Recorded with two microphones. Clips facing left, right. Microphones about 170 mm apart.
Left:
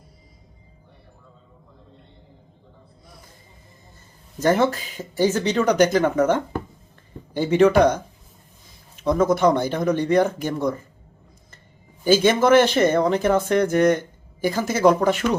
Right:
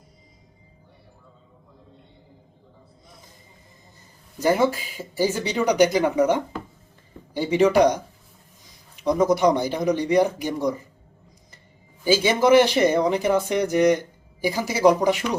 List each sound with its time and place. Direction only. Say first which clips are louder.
4.4 s speech: left 1 dB; 10° right (ahead or behind)
12.0 s speech: left 2 dB; 10° right (ahead or behind)